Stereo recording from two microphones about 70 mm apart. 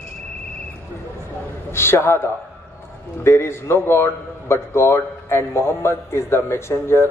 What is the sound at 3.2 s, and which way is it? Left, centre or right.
A man's voice, left.